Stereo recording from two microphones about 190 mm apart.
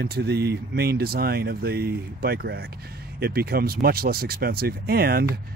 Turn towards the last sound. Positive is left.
turn(degrees=-55)  # may be behind; listen again after turning